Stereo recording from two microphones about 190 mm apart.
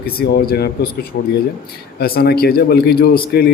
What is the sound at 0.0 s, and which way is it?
A man's voice, 55° left (ahead or behind).